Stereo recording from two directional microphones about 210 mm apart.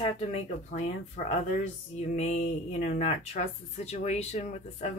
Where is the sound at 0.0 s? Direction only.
30° left (ahead or behind).